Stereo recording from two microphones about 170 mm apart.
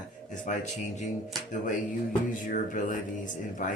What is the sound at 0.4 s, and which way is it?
Speech, 45° left (ahead or behind).